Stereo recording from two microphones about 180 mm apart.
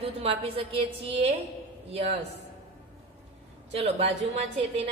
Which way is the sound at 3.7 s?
35° right (ahead or behind).